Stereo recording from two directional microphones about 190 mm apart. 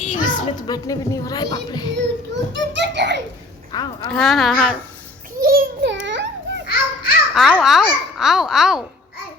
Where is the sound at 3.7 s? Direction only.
20° left (ahead or behind).